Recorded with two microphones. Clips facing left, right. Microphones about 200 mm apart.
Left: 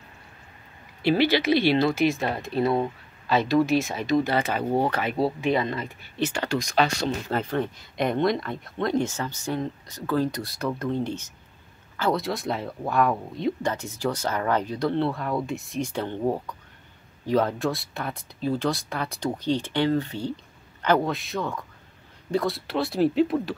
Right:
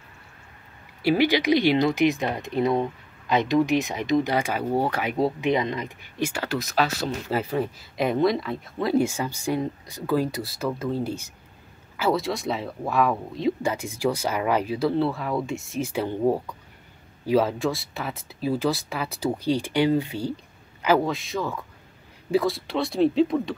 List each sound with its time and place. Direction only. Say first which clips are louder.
1.0 s speech: right 1 dB; 15° right (ahead or behind); by 23.5 s 5° left (ahead or behind)